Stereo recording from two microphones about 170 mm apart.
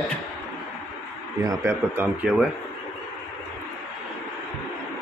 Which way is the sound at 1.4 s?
20° right (ahead or behind).